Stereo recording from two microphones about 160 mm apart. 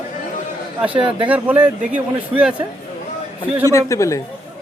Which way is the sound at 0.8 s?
5° right (ahead or behind).